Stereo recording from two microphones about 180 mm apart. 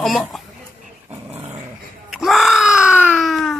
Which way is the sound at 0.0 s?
Centre (ahead or behind).